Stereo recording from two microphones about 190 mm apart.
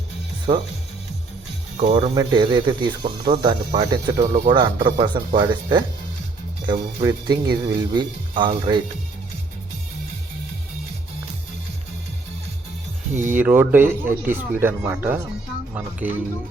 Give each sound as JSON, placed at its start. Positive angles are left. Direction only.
{"t": 0.5, "sound": "speech", "side_deg": -25}
{"t": 1.8, "sound": "speech", "side_deg": -25}
{"t": 13.1, "sound": "speech", "side_deg": -10}